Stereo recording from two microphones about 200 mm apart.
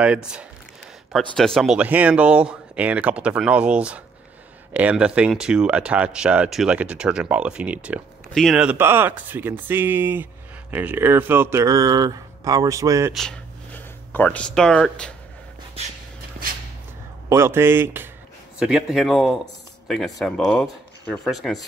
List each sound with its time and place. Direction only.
0.0 s speech: 5° right (ahead or behind)
13.1 s speech: 5° left (ahead or behind)
17.3 s speech: 10° right (ahead or behind)